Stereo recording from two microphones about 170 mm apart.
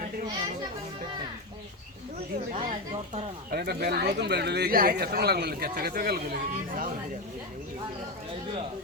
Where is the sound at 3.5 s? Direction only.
65° right (ahead or behind).